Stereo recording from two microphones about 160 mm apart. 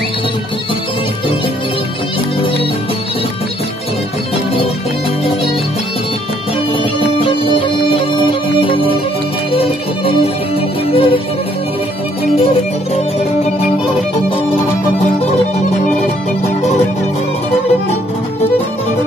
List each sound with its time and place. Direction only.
7.2 s music: 35° left (ahead or behind)